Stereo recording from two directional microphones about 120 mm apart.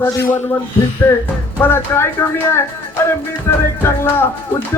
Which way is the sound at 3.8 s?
20° left (ahead or behind).